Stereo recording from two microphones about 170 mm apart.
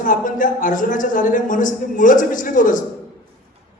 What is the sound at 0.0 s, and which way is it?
Speech, 50° left (ahead or behind).